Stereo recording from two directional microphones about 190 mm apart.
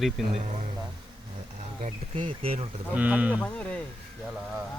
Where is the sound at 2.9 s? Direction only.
10° right (ahead or behind).